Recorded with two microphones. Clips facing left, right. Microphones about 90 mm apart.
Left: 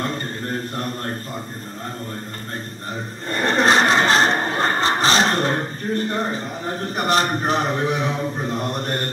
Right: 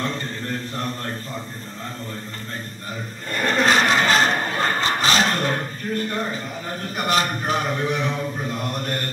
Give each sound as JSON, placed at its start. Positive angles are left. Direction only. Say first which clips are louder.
{"t": 0.0, "sound": "mantra", "louder": "left 1 dB", "side_deg": 40}
{"t": 3.3, "sound": "a sound", "louder": "left 2 dB", "side_deg": 30}
{"t": 7.8, "sound": "a man's voice", "louder": "left 2 dB", "side_deg": 5}
{"t": 8.2, "sound": "mantra", "louder": "left 3 dB", "side_deg": 25}